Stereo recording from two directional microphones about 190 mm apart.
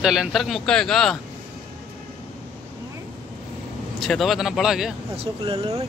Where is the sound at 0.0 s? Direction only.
Centre (ahead or behind).